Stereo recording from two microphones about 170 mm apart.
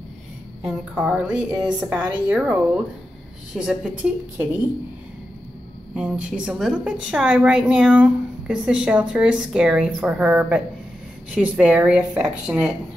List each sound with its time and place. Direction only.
0.6 s a woman's voice: 5° right (ahead or behind)
5.9 s a woman's voice: 5° right (ahead or behind)